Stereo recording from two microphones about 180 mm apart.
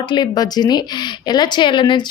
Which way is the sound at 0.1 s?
25° left (ahead or behind).